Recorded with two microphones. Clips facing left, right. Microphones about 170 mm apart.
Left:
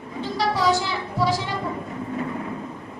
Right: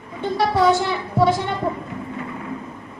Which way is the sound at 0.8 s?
55° right (ahead or behind).